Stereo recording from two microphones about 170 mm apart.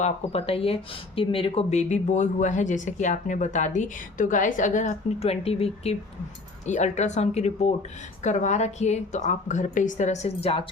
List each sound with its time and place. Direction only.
0.0 s speech: 35° left (ahead or behind)